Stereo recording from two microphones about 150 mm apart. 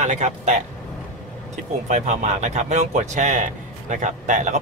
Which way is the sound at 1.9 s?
50° right (ahead or behind).